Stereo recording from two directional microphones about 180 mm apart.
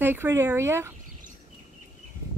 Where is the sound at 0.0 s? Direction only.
10° right (ahead or behind).